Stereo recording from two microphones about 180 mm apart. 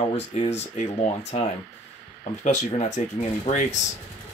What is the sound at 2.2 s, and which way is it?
Speech, 40° left (ahead or behind).